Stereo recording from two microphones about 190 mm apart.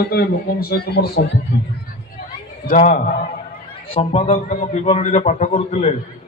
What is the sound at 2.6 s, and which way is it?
A man's voice, 45° left (ahead or behind).